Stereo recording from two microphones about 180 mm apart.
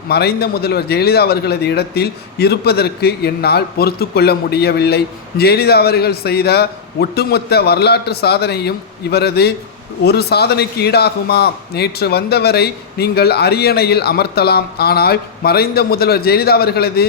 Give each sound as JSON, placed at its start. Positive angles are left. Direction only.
{"t": 0.1, "sound": "a man's voice", "side_deg": 60}